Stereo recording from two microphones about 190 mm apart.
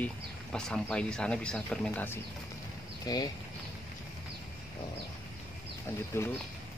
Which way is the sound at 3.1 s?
20° left (ahead or behind).